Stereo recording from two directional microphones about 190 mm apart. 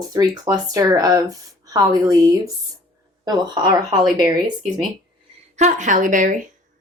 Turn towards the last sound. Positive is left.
turn(degrees=-40)  # may be behind; listen again after turning